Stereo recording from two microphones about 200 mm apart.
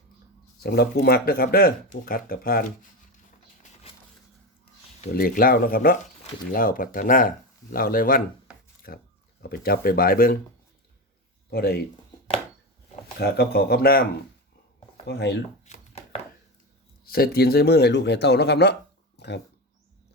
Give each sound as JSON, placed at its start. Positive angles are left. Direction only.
{"t": 0.6, "sound": "speech", "side_deg": 50}
{"t": 4.9, "sound": "speech", "side_deg": 45}
{"t": 11.5, "sound": "speech", "side_deg": 50}
{"t": 13.1, "sound": "speech", "side_deg": 55}
{"t": 15.0, "sound": "speech", "side_deg": 55}
{"t": 15.6, "sound": "chopping", "side_deg": 35}
{"t": 17.1, "sound": "speech", "side_deg": 50}